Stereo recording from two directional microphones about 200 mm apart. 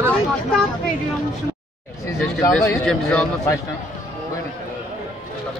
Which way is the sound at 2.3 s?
Centre (ahead or behind).